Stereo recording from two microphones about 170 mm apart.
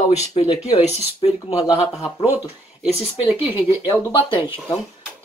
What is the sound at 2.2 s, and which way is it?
Speech, 10° right (ahead or behind).